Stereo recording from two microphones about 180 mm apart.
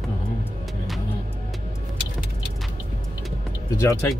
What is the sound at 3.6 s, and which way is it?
Speech, 15° left (ahead or behind).